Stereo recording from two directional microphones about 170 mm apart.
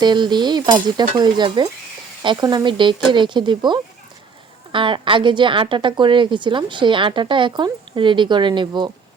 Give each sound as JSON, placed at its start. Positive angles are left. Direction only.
{"t": 0.0, "sound": "a woman's voice", "side_deg": -25}